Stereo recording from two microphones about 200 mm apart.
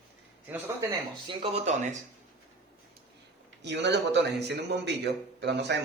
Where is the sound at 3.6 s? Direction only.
60° right (ahead or behind).